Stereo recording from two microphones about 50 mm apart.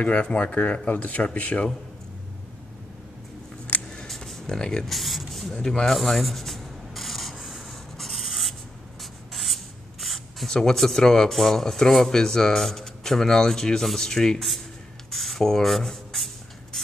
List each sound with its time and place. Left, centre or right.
0.2 s speech: left
3.6 s a sound: left
4.1 s a sound: centre
4.8 s speech: centre
5.9 s rub: centre
7.4 s writing: centre
9.0 s spray: centre
10.5 s speech: centre
15.0 s writing: centre